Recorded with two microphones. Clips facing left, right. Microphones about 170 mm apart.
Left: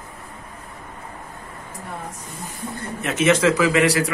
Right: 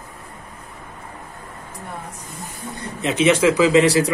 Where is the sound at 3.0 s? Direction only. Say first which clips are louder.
Right 2 dB; 15° right (ahead or behind).